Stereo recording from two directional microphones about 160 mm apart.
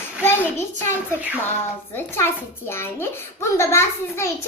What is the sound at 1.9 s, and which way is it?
A child's voice, 15° left (ahead or behind).